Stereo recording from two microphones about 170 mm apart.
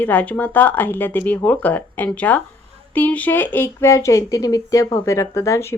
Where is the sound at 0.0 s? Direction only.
10° left (ahead or behind).